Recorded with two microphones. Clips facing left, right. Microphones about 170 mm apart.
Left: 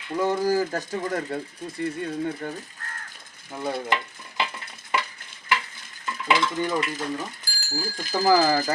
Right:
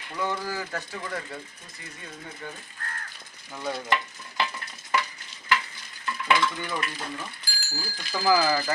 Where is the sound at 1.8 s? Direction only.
60° left (ahead or behind).